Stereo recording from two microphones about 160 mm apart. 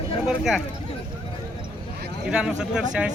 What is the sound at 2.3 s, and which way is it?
Speech, 5° right (ahead or behind).